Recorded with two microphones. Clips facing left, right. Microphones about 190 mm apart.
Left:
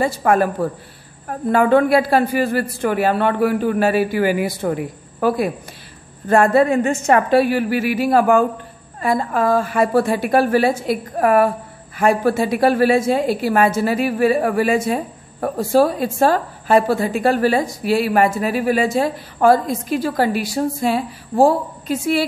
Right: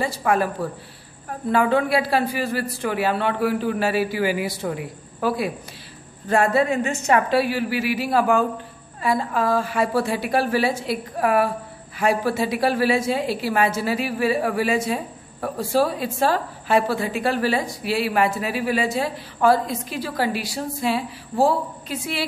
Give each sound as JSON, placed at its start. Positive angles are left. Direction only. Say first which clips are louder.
{"t": 0.0, "sound": "a woman's voice", "louder": "left 5 dB", "side_deg": 50}